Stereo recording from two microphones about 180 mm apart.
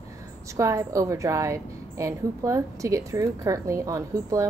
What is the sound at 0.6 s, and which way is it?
A woman's voice, 15° right (ahead or behind).